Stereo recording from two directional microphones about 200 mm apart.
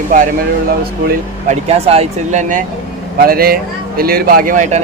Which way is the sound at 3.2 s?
50° right (ahead or behind).